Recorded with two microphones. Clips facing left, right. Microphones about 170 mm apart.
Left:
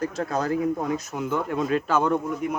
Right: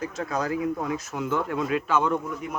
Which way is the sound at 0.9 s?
20° left (ahead or behind).